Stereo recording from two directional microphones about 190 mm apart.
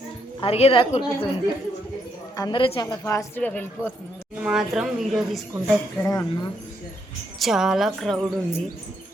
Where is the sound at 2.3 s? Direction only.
20° left (ahead or behind).